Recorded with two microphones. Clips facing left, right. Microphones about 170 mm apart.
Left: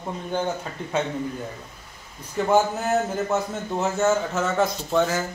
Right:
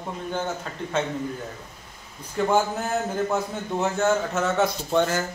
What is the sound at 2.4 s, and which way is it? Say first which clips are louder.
A man's voice: left 2 dB; centre (ahead or behind).